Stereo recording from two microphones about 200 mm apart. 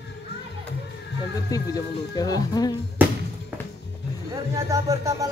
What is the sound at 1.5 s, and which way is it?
Speech, 20° left (ahead or behind).